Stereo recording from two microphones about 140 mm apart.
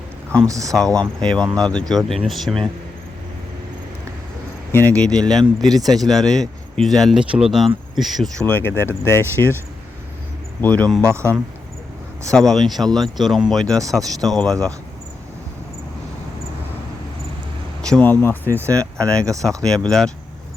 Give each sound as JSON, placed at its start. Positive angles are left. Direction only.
{"t": 0.4, "sound": "speech", "side_deg": -25}
{"t": 0.8, "sound": "speech", "side_deg": 5}
{"t": 4.7, "sound": "speech", "side_deg": 15}
{"t": 8.4, "sound": "speech", "side_deg": 15}
{"t": 10.6, "sound": "speech", "side_deg": 10}
{"t": 11.0, "sound": "speech", "side_deg": -20}
{"t": 12.3, "sound": "speech", "side_deg": 5}
{"t": 17.8, "sound": "speech", "side_deg": 10}
{"t": 19.2, "sound": "speech", "side_deg": -25}
{"t": 19.6, "sound": "speech", "side_deg": 5}